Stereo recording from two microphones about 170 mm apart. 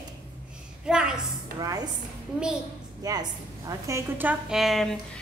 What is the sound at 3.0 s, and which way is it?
A woman's voice, 20° right (ahead or behind).